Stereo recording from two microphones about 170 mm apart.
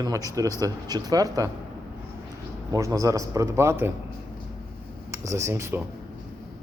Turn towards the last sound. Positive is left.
turn(degrees=-15)  # may be behind; listen again after turning